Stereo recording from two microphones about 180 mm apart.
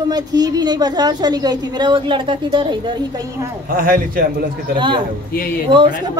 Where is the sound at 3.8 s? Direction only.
50° right (ahead or behind).